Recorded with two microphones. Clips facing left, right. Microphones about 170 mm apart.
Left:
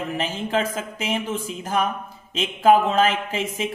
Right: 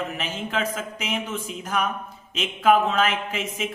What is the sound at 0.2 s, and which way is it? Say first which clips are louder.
Speech: left 4 dB; 30° left (ahead or behind).